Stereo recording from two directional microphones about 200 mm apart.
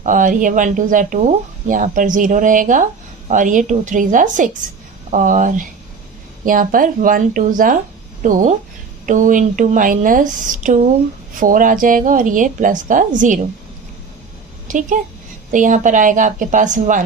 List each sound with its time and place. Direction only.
0.0 s speech: 40° right (ahead or behind)
14.7 s speech: 40° right (ahead or behind)